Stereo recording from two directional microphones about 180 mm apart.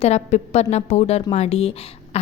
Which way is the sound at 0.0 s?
40° left (ahead or behind).